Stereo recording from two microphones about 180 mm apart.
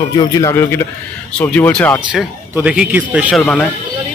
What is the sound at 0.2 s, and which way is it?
Speech, 20° left (ahead or behind).